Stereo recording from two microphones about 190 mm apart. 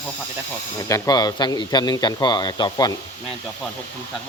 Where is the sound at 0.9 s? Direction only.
20° left (ahead or behind).